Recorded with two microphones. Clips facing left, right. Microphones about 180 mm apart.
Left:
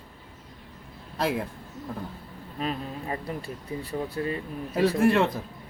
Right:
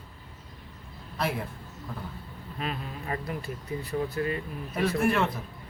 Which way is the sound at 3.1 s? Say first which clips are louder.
Right 2 dB; 30° left (ahead or behind).